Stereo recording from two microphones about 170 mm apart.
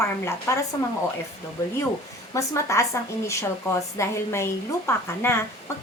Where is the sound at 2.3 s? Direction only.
15° left (ahead or behind).